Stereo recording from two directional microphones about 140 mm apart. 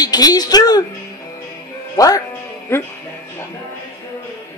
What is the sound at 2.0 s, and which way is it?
Speech, 25° left (ahead or behind).